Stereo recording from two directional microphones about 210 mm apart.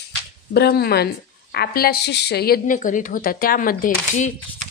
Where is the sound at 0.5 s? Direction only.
50° left (ahead or behind).